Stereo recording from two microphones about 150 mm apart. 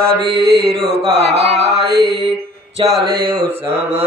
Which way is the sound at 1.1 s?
45° right (ahead or behind).